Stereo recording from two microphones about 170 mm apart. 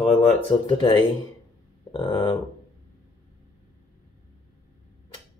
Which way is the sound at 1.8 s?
25° left (ahead or behind).